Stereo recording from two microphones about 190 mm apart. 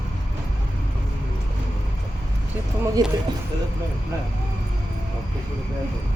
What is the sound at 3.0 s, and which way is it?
Speech, 20° right (ahead or behind).